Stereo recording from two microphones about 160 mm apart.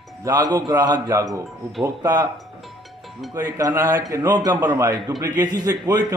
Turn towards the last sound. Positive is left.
turn(degrees=-20)  # may be behind; listen again after turning